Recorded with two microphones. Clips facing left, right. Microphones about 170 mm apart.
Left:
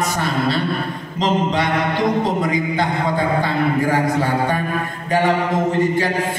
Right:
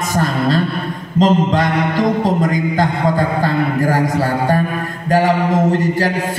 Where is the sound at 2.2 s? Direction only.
45° right (ahead or behind).